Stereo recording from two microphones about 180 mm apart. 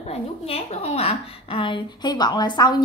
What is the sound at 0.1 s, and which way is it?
A woman's voice, 35° left (ahead or behind).